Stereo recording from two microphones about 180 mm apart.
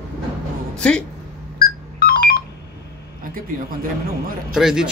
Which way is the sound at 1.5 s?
55° left (ahead or behind).